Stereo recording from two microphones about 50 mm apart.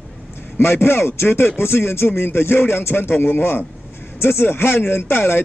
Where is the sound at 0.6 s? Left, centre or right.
Left.